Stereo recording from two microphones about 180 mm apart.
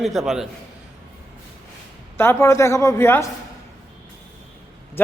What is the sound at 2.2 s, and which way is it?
A woman's voice, 15° left (ahead or behind).